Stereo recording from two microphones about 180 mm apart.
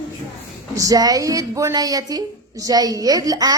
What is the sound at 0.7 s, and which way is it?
A woman's voice, 20° right (ahead or behind).